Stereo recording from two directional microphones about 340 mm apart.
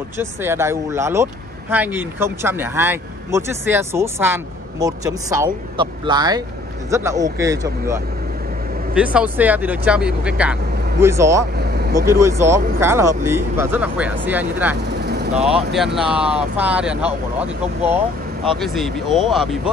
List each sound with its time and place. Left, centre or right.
0.2 s speech: centre
14.8 s vehicle: right
15.3 s speech: centre
18.6 s speech: centre